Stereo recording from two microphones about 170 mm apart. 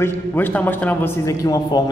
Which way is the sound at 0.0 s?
10° left (ahead or behind).